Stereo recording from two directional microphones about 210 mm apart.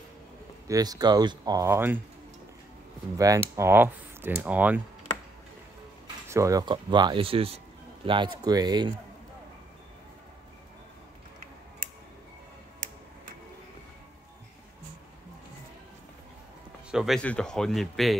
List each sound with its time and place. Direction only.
0.7 s speech: 20° right (ahead or behind)
3.2 s speech: 15° right (ahead or behind)
6.2 s speech: 15° right (ahead or behind)
16.9 s speech: centre (ahead or behind)